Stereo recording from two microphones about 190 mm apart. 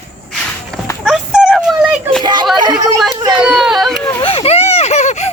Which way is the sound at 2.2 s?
25° right (ahead or behind).